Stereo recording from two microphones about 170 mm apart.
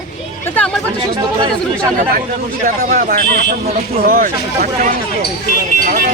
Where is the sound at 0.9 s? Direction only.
30° right (ahead or behind).